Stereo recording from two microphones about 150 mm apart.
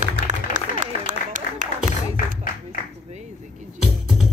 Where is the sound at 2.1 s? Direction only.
65° left (ahead or behind).